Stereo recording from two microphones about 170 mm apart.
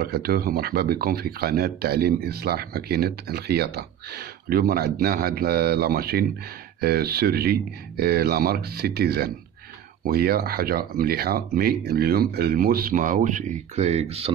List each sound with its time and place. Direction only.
0.0 s speech: 65° right (ahead or behind); by 14.3 s 35° right (ahead or behind)